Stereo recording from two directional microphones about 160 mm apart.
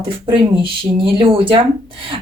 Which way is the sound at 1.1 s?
30° right (ahead or behind).